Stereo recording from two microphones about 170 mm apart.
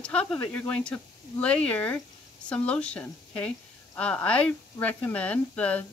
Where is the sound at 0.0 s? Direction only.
5° left (ahead or behind).